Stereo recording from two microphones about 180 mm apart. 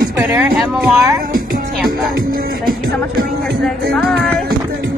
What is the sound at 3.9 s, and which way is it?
Speech, centre (ahead or behind).